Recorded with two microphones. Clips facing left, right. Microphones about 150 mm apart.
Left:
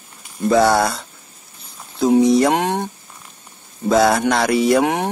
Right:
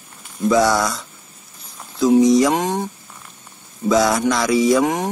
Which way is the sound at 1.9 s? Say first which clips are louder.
Even; 60° left (ahead or behind).